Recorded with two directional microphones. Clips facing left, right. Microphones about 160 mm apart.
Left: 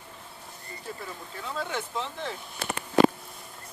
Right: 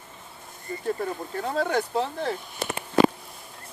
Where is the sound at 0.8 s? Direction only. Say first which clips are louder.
Right 11 dB; 50° right (ahead or behind).